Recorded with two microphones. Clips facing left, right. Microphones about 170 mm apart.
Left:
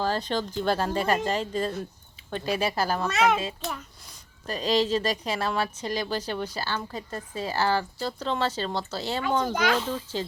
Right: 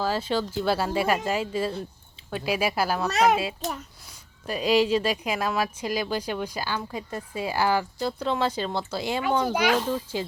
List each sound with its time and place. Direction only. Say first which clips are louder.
0.0 s speech: right 1 dB; 5° right (ahead or behind)
3.1 s a child's voice: right 2 dB; 40° right (ahead or behind)
4.4 s speech: right 3 dB; 10° right (ahead or behind)